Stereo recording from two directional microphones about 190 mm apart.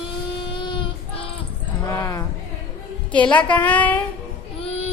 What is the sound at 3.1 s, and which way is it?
Speech, 5° left (ahead or behind).